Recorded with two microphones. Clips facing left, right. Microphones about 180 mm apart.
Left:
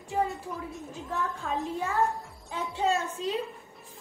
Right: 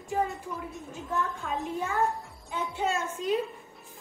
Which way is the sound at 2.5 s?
35° left (ahead or behind).